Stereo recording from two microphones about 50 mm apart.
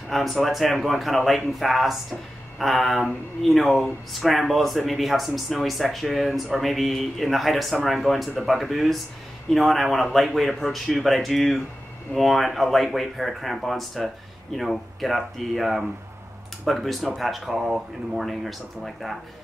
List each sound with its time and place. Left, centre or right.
0.1 s speech: centre